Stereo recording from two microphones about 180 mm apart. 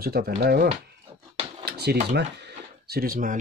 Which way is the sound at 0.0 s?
60° right (ahead or behind).